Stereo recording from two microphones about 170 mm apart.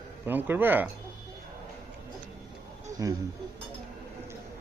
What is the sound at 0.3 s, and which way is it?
Speech, 10° right (ahead or behind).